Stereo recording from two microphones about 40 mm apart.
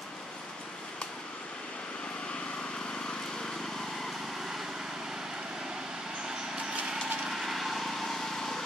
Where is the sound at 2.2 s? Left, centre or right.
Left; by 6.8 s centre.